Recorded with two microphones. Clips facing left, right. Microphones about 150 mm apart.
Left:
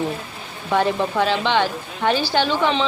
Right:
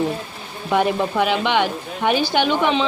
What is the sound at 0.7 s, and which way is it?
A woman's voice, 10° right (ahead or behind).